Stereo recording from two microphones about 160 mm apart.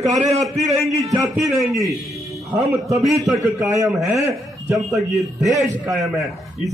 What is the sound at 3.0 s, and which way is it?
Speech, centre (ahead or behind).